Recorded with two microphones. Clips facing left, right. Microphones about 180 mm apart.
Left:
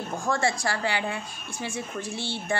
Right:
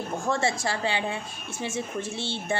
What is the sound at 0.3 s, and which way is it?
A woman's voice, 25° right (ahead or behind).